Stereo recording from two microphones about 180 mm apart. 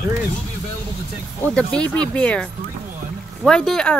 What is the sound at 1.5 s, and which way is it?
Speech, 5° left (ahead or behind).